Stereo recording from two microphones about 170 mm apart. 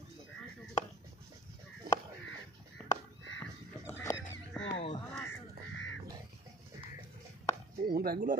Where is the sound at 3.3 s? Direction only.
15° left (ahead or behind).